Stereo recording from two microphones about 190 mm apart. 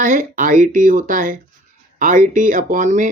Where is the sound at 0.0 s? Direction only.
40° right (ahead or behind).